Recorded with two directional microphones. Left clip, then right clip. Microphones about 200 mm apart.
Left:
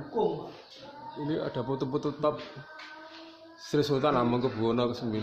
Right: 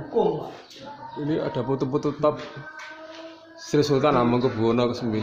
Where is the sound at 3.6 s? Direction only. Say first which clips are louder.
Right 6 dB; centre (ahead or behind).